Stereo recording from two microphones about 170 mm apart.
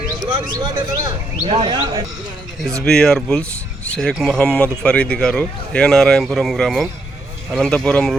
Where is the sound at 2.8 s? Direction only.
5° left (ahead or behind).